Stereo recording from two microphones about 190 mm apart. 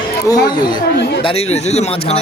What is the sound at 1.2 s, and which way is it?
Speech, 30° left (ahead or behind).